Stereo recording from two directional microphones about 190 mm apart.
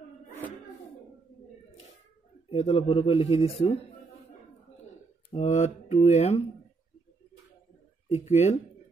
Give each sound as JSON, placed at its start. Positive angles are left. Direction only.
{"t": 2.5, "sound": "speech", "side_deg": 30}
{"t": 5.3, "sound": "speech", "side_deg": 35}
{"t": 8.1, "sound": "speech", "side_deg": 35}